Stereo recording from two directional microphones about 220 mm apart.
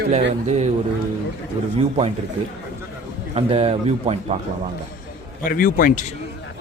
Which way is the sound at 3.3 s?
25° right (ahead or behind).